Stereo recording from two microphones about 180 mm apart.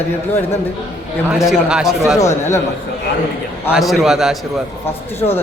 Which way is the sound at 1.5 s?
5° right (ahead or behind).